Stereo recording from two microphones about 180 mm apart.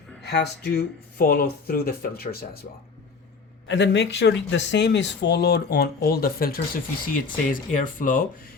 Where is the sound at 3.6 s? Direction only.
80° left.